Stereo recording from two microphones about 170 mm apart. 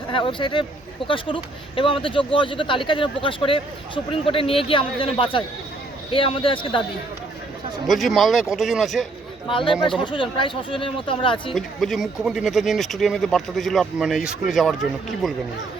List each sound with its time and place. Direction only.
0.1 s speech: 30° left (ahead or behind)
7.9 s speech: centre (ahead or behind)
9.5 s speech: 30° left (ahead or behind)
11.5 s speech: centre (ahead or behind)